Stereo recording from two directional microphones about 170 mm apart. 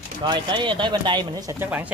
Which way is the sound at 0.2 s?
25° right (ahead or behind).